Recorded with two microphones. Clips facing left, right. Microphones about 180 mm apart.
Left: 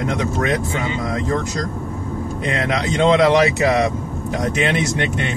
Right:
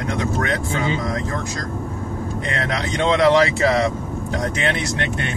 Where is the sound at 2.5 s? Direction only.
20° left (ahead or behind).